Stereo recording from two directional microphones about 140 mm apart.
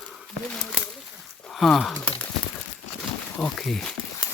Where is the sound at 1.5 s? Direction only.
Centre (ahead or behind).